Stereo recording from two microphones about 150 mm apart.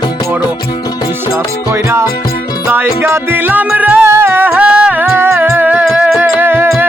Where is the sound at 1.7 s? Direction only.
15° right (ahead or behind).